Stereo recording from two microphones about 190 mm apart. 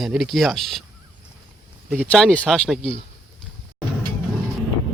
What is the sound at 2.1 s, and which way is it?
Speech, 5° left (ahead or behind).